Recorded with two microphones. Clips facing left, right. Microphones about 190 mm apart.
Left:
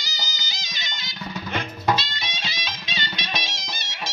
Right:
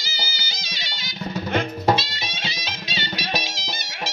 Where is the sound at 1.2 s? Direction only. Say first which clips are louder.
Right 6 dB; 40° right (ahead or behind).